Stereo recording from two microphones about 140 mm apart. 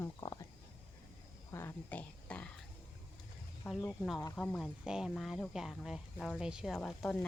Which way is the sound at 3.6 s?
10° left (ahead or behind).